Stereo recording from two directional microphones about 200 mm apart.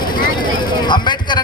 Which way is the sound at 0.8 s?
20° left (ahead or behind).